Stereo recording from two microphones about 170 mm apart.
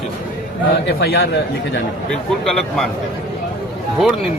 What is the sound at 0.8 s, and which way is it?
Speech, 70° left (ahead or behind).